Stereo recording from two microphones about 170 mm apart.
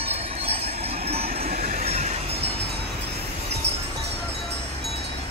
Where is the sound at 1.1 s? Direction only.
65° right (ahead or behind); by 2.4 s 40° right (ahead or behind).